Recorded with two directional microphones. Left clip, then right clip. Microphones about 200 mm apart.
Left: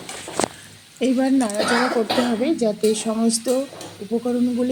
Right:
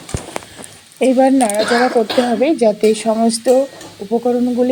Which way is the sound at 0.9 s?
15° right (ahead or behind).